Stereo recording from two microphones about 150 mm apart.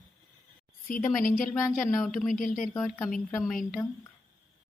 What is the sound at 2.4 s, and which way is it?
Speech, 60° left (ahead or behind).